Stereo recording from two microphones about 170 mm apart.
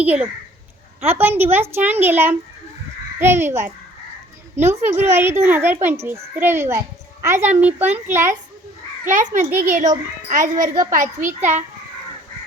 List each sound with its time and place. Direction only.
0.0 s a child's voice: 10° right (ahead or behind)
9.0 s a child's voice: 45° right (ahead or behind)
10.6 s a woman's voice: 20° right (ahead or behind)
10.9 s a child's voice: 50° right (ahead or behind)
11.3 s a child's voice: 10° right (ahead or behind)